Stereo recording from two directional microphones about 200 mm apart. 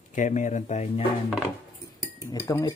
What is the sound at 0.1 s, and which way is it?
Speech, 40° left (ahead or behind).